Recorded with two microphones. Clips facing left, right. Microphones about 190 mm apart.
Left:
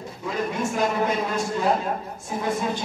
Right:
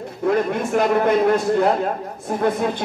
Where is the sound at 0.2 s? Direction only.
60° right (ahead or behind).